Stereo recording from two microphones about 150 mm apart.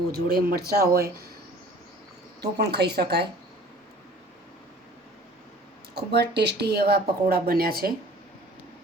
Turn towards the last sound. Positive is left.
turn(degrees=-90)